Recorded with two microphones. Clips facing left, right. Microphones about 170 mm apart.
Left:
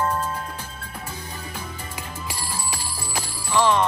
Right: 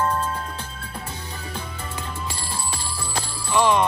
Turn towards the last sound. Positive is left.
turn(degrees=-15)  # may be behind; listen again after turning